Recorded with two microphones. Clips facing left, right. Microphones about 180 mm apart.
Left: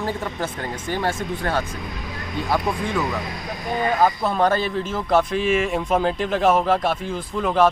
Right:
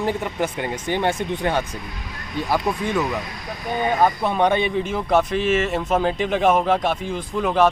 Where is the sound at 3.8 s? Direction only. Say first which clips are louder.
Even; 5° left (ahead or behind).